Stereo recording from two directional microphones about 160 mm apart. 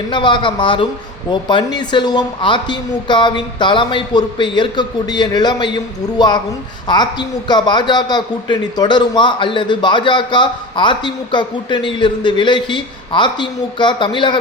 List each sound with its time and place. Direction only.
0.1 s a man's voice: 30° left (ahead or behind)